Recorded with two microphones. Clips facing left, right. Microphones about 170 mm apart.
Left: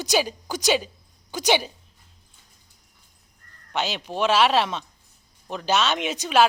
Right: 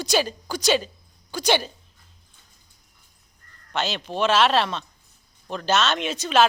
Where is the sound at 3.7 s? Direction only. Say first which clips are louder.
Even; 10° left (ahead or behind).